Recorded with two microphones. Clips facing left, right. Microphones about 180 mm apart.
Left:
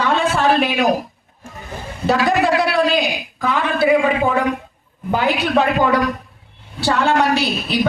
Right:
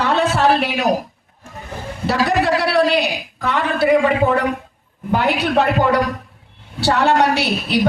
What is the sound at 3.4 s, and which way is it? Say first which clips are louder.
Speech: even; 70° right (ahead or behind).